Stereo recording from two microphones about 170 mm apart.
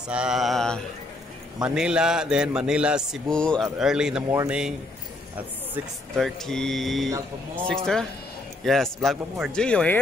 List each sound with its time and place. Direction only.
0.1 s a man's voice: 5° right (ahead or behind)
6.1 s a man's voice: centre (ahead or behind)
7.1 s speech: 20° right (ahead or behind)
7.6 s a man's voice: 5° left (ahead or behind)